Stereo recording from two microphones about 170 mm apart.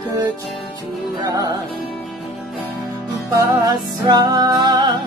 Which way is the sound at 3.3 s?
20° right (ahead or behind).